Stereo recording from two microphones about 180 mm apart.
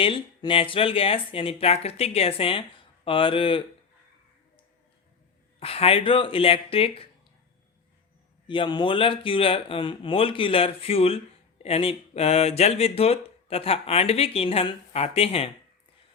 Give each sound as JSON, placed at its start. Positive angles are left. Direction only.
{"t": 0.0, "sound": "speech", "side_deg": 30}
{"t": 5.5, "sound": "speech", "side_deg": 35}
{"t": 8.4, "sound": "speech", "side_deg": 25}